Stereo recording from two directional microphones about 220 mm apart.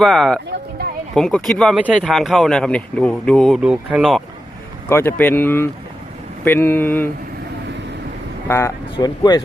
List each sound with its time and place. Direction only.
0.0 s speech: centre (ahead or behind)
4.9 s speech: 10° left (ahead or behind)
8.4 s speech: 15° left (ahead or behind)